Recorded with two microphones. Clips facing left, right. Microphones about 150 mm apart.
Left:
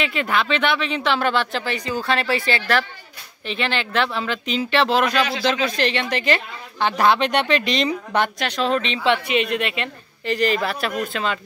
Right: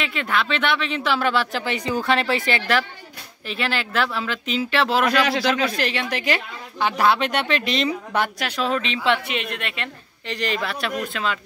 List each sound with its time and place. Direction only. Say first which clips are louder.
0.0 s speech: left 2 dB; centre (ahead or behind)
1.6 s a woman's voice: right 1 dB; 20° right (ahead or behind)
3.4 s speech: left 1 dB; 5° right (ahead or behind)